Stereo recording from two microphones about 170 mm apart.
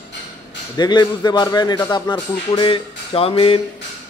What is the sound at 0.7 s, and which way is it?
Speech, 25° left (ahead or behind).